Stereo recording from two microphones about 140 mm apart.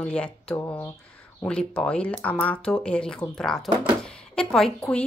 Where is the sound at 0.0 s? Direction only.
10° left (ahead or behind).